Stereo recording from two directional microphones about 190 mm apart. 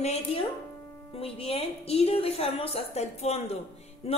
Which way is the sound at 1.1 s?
30° left (ahead or behind).